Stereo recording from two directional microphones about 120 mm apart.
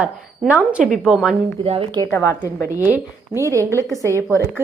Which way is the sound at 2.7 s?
20° right (ahead or behind).